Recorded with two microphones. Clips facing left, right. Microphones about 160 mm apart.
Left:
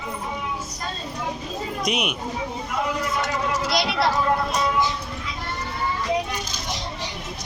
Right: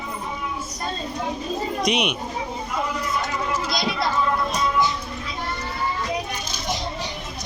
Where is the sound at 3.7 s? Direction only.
70° left (ahead or behind).